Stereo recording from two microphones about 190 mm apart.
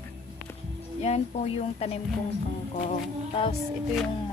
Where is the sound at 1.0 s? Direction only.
35° left (ahead or behind).